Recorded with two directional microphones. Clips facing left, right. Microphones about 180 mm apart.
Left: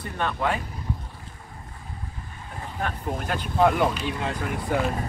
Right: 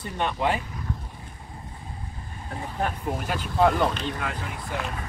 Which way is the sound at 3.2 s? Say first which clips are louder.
Left 1 dB; centre (ahead or behind).